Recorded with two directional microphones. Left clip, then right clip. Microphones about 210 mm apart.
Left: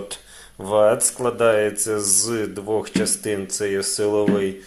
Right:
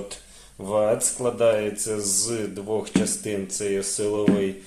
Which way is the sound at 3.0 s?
15° left (ahead or behind).